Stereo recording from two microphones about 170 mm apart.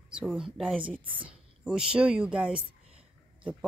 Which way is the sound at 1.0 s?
30° right (ahead or behind).